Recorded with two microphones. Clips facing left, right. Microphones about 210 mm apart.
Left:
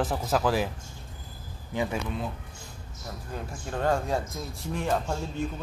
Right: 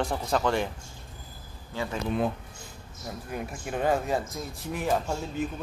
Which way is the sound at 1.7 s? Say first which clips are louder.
Left 3 dB; 15° left (ahead or behind).